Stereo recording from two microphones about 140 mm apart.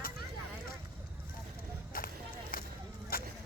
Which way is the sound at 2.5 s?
80° left.